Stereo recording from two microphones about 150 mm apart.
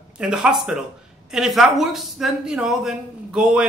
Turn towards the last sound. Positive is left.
turn(degrees=-5)  # may be behind; listen again after turning